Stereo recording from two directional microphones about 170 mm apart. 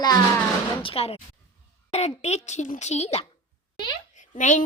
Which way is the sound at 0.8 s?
35° left (ahead or behind).